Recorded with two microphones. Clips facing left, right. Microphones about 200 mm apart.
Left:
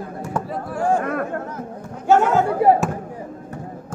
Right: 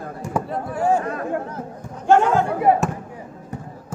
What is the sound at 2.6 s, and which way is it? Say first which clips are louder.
Speech: left 3 dB; 35° left (ahead or behind).